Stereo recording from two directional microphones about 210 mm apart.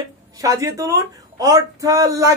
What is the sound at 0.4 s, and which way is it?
Speech, 15° right (ahead or behind).